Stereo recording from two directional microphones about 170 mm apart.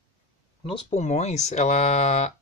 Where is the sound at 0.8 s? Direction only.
40° left (ahead or behind).